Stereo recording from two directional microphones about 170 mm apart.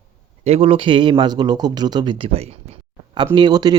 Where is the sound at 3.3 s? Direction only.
25° right (ahead or behind).